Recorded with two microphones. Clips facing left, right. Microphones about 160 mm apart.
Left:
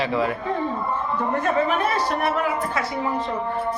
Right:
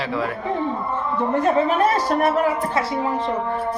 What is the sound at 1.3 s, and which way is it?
Speech, 40° right (ahead or behind).